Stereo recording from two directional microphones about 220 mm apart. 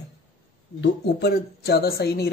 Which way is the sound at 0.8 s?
50° left (ahead or behind).